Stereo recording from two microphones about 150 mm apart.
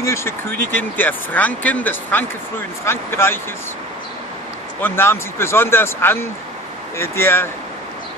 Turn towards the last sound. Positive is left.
turn(degrees=15)  # may be behind; listen again after turning